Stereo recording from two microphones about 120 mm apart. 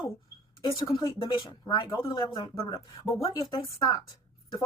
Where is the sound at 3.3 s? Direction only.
35° left (ahead or behind).